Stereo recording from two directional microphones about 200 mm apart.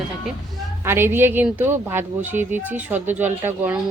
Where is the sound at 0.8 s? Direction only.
10° right (ahead or behind).